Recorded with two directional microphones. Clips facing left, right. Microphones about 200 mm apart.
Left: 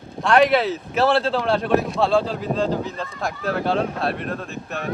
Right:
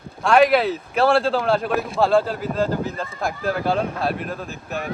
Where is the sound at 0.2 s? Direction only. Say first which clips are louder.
Right 1 dB; centre (ahead or behind).